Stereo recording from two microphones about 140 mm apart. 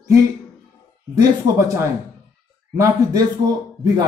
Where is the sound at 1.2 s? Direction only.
25° right (ahead or behind).